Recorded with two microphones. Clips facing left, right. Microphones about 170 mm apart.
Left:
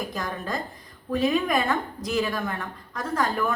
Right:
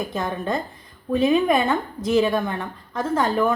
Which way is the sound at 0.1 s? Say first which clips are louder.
Right 5 dB; 25° right (ahead or behind).